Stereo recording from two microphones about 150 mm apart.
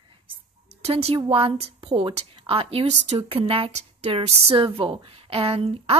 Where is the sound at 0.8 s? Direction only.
40° right (ahead or behind).